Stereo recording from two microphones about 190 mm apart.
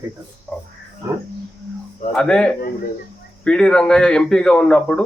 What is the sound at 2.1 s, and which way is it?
A man's voice, 5° left (ahead or behind).